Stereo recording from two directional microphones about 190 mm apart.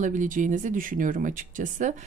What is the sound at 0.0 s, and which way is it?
Speech, 45° right (ahead or behind).